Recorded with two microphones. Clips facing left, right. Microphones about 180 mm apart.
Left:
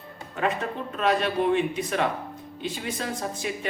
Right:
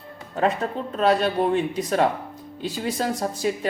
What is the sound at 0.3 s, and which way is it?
A man's voice, 35° right (ahead or behind).